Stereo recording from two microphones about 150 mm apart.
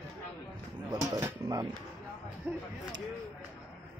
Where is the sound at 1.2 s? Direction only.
25° right (ahead or behind).